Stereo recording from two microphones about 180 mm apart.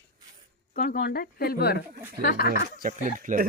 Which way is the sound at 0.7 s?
50° left (ahead or behind).